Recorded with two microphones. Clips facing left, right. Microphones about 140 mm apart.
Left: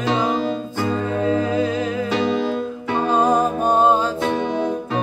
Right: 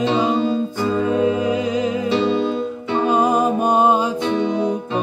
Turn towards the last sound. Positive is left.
turn(degrees=-15)  # may be behind; listen again after turning